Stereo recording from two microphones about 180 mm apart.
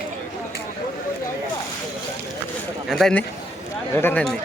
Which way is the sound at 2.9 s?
5° left (ahead or behind).